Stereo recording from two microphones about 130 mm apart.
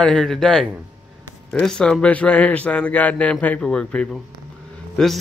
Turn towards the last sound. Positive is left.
turn(degrees=5)  # may be behind; listen again after turning